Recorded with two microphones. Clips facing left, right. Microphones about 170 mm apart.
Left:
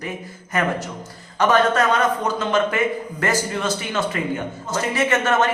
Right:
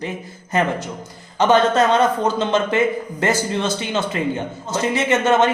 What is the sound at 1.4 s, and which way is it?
A man's voice, 25° right (ahead or behind).